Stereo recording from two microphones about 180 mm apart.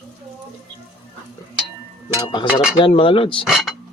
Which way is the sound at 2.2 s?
25° left (ahead or behind).